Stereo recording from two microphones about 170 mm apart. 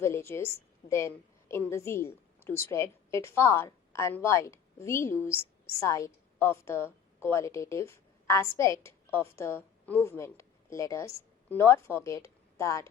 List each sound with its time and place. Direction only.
0.0 s a woman's voice: 15° left (ahead or behind)